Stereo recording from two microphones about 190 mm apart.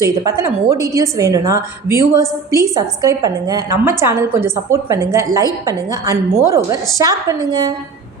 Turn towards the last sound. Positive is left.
turn(degrees=-20)  # may be behind; listen again after turning